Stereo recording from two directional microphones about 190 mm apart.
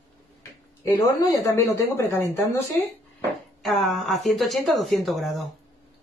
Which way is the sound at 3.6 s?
Centre (ahead or behind).